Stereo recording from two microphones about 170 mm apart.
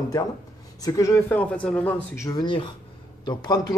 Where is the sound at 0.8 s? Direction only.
20° left (ahead or behind).